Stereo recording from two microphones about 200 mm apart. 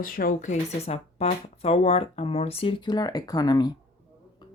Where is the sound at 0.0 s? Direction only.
45° left (ahead or behind); by 3.7 s 20° left (ahead or behind).